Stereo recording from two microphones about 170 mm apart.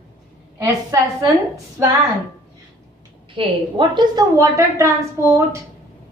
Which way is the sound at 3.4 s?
30° right (ahead or behind).